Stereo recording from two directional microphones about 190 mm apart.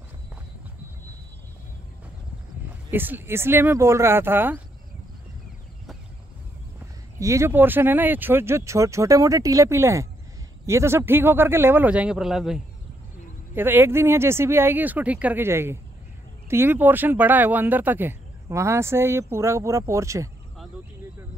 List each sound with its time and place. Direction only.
2.9 s speech: 10° right (ahead or behind)
7.2 s speech: 15° right (ahead or behind)